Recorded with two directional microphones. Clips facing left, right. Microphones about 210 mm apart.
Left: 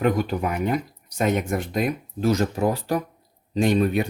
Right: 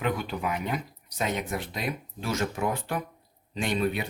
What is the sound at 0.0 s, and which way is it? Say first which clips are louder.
Speech: left 7 dB; 45° left (ahead or behind).